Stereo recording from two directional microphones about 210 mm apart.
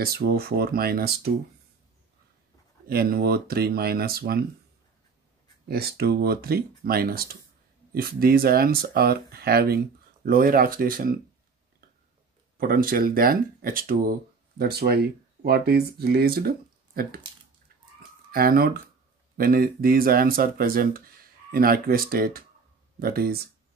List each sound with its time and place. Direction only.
0.0 s speech: 45° right (ahead or behind)
2.9 s speech: 45° right (ahead or behind)
5.7 s speech: 50° right (ahead or behind)
12.5 s speech: 45° right (ahead or behind)
18.3 s speech: 45° right (ahead or behind)